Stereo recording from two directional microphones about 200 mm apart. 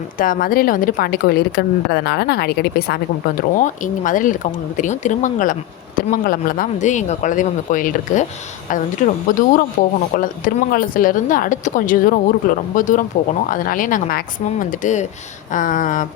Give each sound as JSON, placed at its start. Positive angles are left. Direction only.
{"t": 0.2, "sound": "a woman's voice", "side_deg": 45}